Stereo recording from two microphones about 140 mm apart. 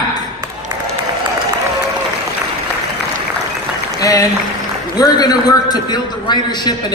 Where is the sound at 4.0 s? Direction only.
25° left (ahead or behind).